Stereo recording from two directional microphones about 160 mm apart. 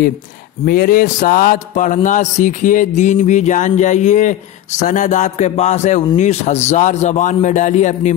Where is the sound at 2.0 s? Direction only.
50° left (ahead or behind).